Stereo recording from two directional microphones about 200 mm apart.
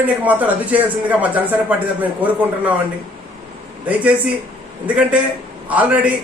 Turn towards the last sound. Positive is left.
turn(degrees=-5)  # may be behind; listen again after turning